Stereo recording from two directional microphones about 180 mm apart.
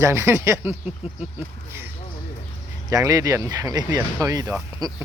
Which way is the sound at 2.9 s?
20° right (ahead or behind).